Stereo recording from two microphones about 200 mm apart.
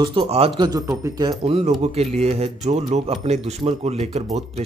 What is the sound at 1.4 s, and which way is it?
Speech, 30° right (ahead or behind).